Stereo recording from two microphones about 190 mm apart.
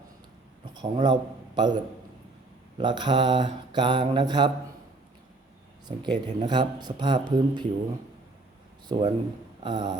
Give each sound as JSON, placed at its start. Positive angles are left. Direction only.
{"t": 0.6, "sound": "a man's voice", "side_deg": -25}
{"t": 2.7, "sound": "mantra", "side_deg": -25}
{"t": 6.0, "sound": "mantra", "side_deg": -25}
{"t": 8.9, "sound": "mantra", "side_deg": -25}